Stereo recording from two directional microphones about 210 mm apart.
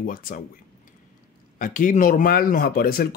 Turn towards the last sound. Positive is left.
turn(degrees=45)  # may be behind; listen again after turning